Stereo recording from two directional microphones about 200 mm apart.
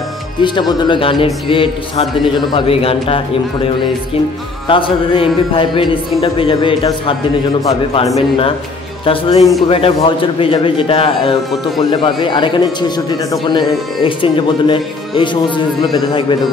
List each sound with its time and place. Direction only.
0.4 s a man's voice: 20° left (ahead or behind)
4.6 s a man's voice: 25° left (ahead or behind)
9.0 s a man's voice: 25° left (ahead or behind)